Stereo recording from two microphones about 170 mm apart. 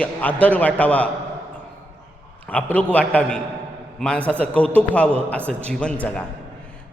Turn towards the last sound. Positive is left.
turn(degrees=5)  # may be behind; listen again after turning